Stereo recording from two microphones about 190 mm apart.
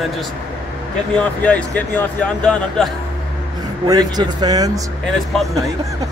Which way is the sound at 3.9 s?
20° right (ahead or behind).